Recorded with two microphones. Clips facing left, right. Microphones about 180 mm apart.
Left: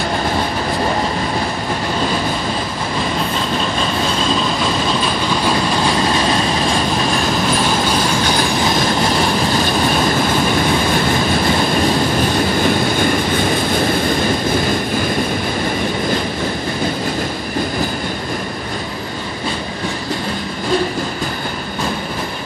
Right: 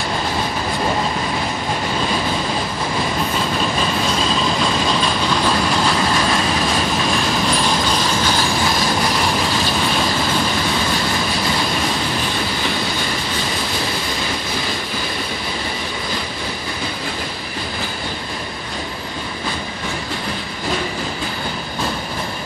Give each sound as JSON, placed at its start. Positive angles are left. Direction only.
{"t": 12.6, "sound": "vehicle", "side_deg": 55}